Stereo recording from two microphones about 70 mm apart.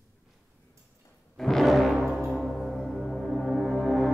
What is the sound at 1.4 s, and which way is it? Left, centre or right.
Music, centre.